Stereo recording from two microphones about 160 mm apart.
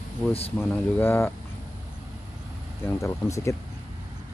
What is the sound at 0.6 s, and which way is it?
Speech, 15° left (ahead or behind).